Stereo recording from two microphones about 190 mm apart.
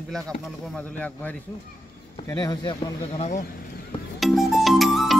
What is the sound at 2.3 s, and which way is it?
Speech, 20° left (ahead or behind).